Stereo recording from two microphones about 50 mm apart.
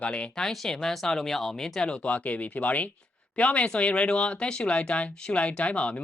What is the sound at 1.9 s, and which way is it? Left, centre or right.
Speech, left.